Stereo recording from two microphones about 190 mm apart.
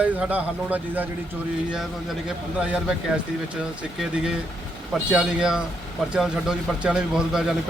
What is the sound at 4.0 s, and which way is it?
A man's voice, 5° right (ahead or behind).